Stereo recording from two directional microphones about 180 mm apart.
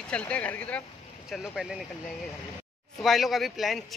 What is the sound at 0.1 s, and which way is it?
Speech, 5° left (ahead or behind).